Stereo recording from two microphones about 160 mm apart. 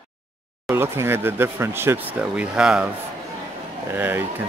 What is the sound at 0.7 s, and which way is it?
Speech, 15° right (ahead or behind).